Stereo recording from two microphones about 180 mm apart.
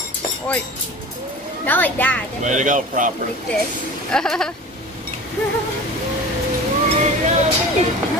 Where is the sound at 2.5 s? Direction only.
45° right (ahead or behind).